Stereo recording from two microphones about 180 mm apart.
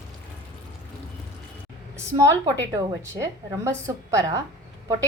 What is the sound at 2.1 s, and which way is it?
A woman's voice, 15° right (ahead or behind).